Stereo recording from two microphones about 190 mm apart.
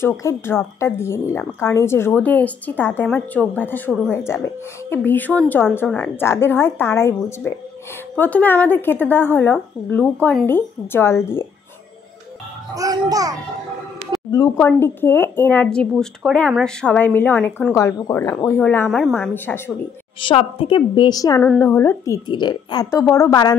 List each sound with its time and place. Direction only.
0.0 s speech: 15° left (ahead or behind)
12.7 s a child's voice: 20° right (ahead or behind)
14.3 s a woman's voice: 20° left (ahead or behind)
20.2 s a woman's voice: 30° left (ahead or behind)